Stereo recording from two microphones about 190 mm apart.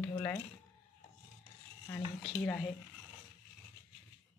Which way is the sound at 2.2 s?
5° left (ahead or behind).